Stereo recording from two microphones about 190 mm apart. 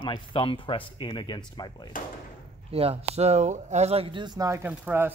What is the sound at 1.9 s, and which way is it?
Speech, 45° left (ahead or behind).